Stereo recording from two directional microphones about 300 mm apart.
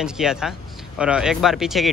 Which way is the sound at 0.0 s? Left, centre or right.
Centre.